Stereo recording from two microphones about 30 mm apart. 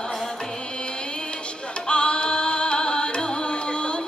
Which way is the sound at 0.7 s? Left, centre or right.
Left.